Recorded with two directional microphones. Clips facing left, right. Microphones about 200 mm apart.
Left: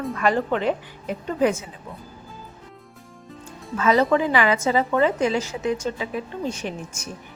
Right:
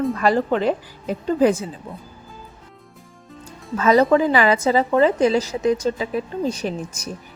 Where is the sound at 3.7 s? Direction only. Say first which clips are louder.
Right 4 dB; 40° right (ahead or behind).